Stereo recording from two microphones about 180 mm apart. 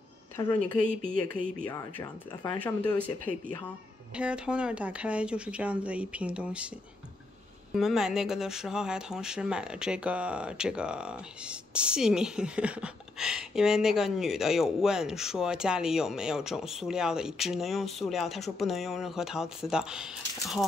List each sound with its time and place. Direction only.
0.4 s speech: 20° left (ahead or behind)
2.6 s speech: 10° left (ahead or behind)
4.2 s speech: 5° right (ahead or behind)
7.7 s speech: centre (ahead or behind)